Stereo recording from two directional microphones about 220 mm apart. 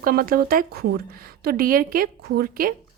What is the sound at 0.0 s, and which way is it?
A woman's voice, 40° right (ahead or behind).